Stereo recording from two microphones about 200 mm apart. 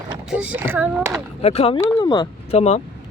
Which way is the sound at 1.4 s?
30° left (ahead or behind).